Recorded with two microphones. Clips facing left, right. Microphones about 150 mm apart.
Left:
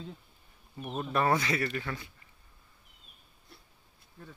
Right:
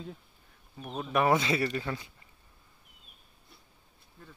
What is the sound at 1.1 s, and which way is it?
Speech, 20° right (ahead or behind).